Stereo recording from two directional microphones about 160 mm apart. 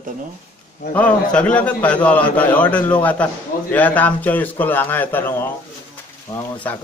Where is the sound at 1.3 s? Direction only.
5° left (ahead or behind).